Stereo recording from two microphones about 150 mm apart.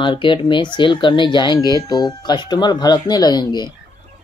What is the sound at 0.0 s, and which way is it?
Speech, 35° left (ahead or behind).